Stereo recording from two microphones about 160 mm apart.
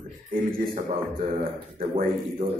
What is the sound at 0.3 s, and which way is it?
A man's voice, 60° right (ahead or behind).